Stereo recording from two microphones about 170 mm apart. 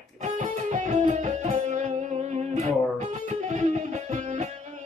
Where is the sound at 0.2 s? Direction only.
45° right (ahead or behind).